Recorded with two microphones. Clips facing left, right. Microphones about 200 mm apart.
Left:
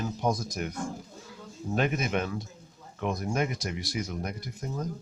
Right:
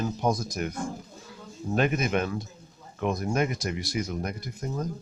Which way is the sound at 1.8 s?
60° right (ahead or behind).